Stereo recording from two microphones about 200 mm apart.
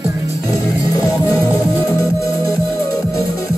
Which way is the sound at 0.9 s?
15° left (ahead or behind).